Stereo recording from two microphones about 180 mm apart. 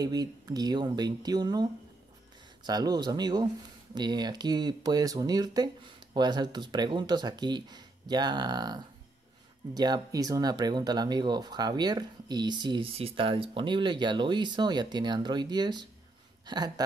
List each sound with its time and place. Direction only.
0.0 s speech: 20° right (ahead or behind)